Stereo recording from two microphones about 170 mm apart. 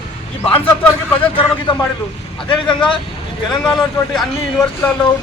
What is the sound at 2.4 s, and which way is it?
Speech, 30° left (ahead or behind).